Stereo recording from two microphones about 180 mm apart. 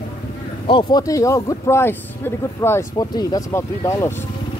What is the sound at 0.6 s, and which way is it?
Speech, 25° left (ahead or behind).